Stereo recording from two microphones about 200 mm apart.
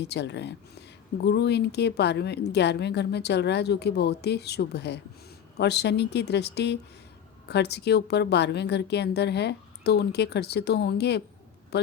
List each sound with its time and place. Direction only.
0.0 s speech: 60° left (ahead or behind)